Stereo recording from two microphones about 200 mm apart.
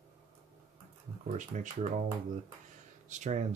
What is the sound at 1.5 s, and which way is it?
Speech, 35° right (ahead or behind).